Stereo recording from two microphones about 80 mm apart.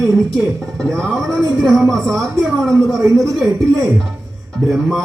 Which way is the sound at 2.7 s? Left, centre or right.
Right.